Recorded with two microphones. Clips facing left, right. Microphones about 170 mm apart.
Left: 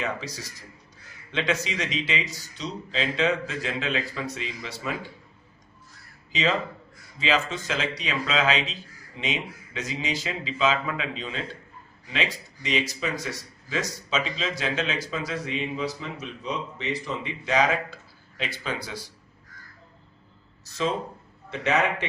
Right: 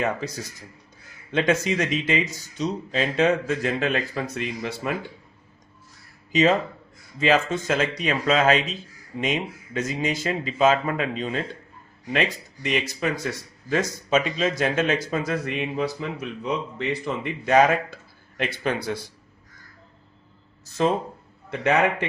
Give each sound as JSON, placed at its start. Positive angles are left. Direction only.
{"t": 0.0, "sound": "speech", "side_deg": -50}
{"t": 6.3, "sound": "speech", "side_deg": -45}
{"t": 21.5, "sound": "a man's voice", "side_deg": -55}